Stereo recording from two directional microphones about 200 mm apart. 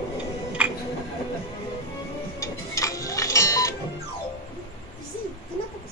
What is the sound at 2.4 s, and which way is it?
Tick-tock, 15° left (ahead or behind).